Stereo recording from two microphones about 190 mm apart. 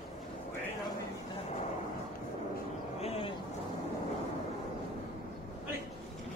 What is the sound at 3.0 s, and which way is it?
Vehicle, 30° left (ahead or behind).